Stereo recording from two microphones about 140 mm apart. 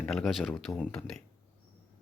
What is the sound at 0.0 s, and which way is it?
Speech, 5° left (ahead or behind).